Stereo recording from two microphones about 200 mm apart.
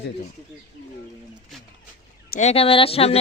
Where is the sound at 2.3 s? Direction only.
30° left (ahead or behind).